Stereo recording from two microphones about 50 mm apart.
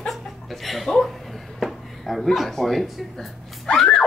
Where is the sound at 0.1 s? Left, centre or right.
Centre.